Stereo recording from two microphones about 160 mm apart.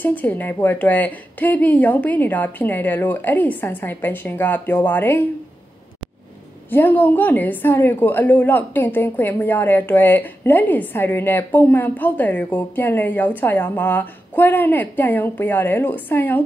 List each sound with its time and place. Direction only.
0.0 s a woman's voice: 10° left (ahead or behind)
6.7 s a woman's voice: 10° left (ahead or behind)